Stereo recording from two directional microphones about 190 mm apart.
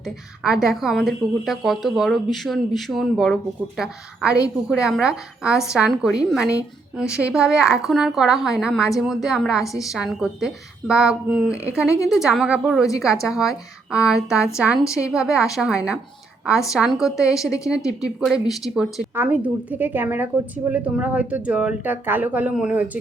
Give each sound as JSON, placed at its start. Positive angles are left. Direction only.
{"t": 0.0, "sound": "speech", "side_deg": 0}
{"t": 14.3, "sound": "a woman's voice", "side_deg": 15}
{"t": 14.6, "sound": "speech", "side_deg": -5}
{"t": 14.8, "sound": "a woman's voice", "side_deg": 15}
{"t": 15.1, "sound": "speech", "side_deg": -5}
{"t": 17.3, "sound": "a woman's voice", "side_deg": 15}
{"t": 18.0, "sound": "a woman's voice", "side_deg": 0}